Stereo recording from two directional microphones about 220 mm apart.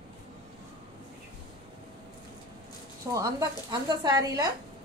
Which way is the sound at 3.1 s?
20° right (ahead or behind).